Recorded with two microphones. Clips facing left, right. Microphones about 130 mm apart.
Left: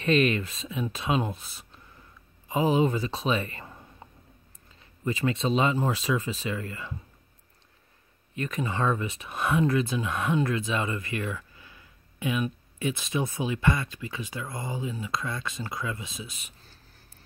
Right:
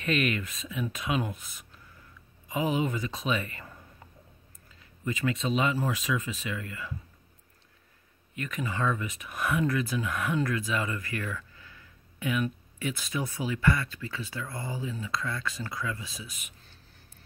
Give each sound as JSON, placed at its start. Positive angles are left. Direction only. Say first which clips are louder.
{"t": 0.0, "sound": "speech", "louder": "left 5 dB", "side_deg": 30}
{"t": 8.4, "sound": "speech", "louder": "left 3 dB", "side_deg": 35}